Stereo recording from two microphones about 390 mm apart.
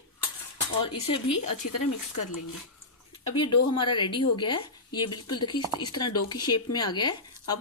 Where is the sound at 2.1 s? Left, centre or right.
Left.